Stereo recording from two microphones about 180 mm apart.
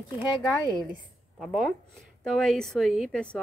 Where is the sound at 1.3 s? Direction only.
Centre (ahead or behind).